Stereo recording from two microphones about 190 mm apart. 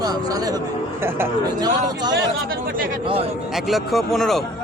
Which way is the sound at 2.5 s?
45° right (ahead or behind).